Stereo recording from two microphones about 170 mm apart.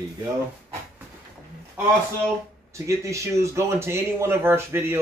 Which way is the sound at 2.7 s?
20° right (ahead or behind).